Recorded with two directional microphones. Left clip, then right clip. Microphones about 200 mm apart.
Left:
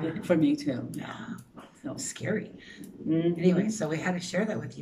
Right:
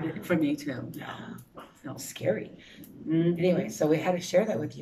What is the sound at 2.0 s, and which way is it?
Speech, 10° right (ahead or behind).